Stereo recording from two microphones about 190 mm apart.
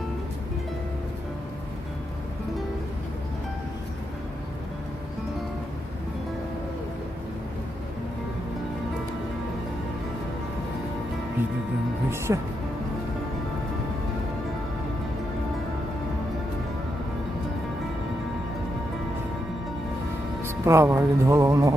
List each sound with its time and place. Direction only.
12.3 s speech: 15° right (ahead or behind)
20.4 s speech: 15° right (ahead or behind)